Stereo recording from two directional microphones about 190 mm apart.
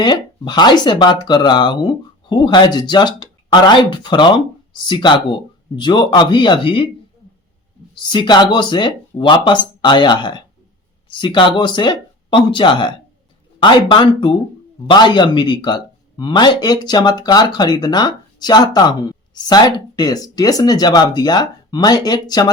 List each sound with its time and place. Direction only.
0.0 s a man's voice: 20° left (ahead or behind)
7.9 s a man's voice: 25° left (ahead or behind)